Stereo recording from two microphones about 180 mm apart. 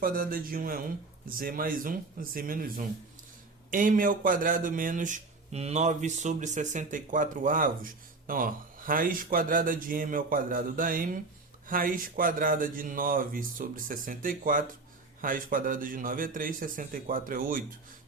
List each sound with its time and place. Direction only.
0.0 s speech: 50° right (ahead or behind)